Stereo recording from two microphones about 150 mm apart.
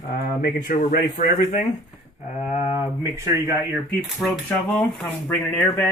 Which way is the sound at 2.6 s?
15° right (ahead or behind).